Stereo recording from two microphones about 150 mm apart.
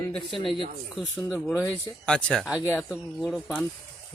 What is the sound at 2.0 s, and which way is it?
Speech, 5° left (ahead or behind).